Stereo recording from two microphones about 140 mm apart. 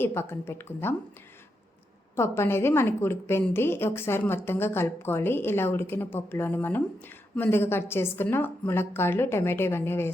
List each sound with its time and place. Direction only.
0.0 s a woman's voice: 15° left (ahead or behind)
2.1 s a woman's voice: 20° left (ahead or behind)